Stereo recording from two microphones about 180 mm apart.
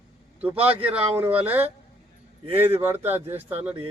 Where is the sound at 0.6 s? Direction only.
5° right (ahead or behind).